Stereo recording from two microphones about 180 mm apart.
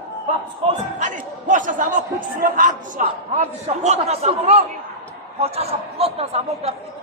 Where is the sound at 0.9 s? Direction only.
45° right (ahead or behind).